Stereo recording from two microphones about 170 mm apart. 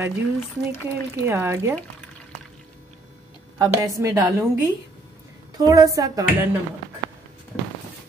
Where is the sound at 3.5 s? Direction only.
20° right (ahead or behind).